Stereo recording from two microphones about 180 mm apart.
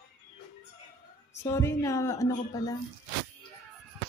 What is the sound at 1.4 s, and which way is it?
A woman's voice, 15° left (ahead or behind).